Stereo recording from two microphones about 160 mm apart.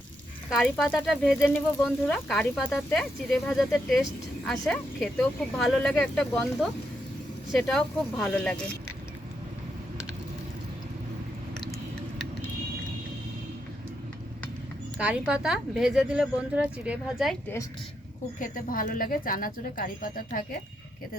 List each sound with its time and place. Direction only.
0.5 s speech: 5° right (ahead or behind)
14.9 s a woman's voice: 5° right (ahead or behind)
18.3 s speech: 60° left (ahead or behind)